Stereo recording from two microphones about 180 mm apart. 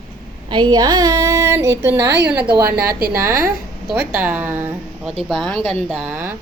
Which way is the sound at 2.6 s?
55° right (ahead or behind).